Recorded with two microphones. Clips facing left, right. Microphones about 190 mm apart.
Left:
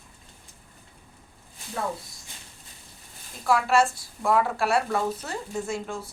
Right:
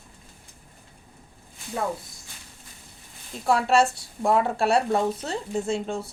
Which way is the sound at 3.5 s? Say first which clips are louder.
Right 1 dB; 30° right (ahead or behind).